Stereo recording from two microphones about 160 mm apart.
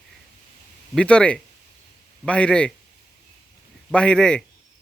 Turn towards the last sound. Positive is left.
turn(degrees=5)  # may be behind; listen again after turning